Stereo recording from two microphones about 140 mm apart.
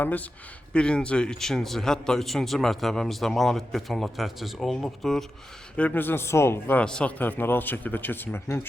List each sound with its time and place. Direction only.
0.0 s speech: 10° left (ahead or behind)